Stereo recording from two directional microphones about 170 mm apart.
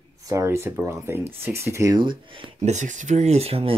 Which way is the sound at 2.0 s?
30° right (ahead or behind).